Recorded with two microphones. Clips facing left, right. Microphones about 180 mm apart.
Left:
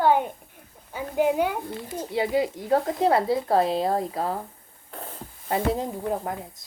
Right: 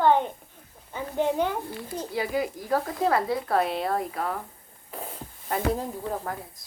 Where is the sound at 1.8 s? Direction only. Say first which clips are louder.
Left 6 dB; 20° left (ahead or behind).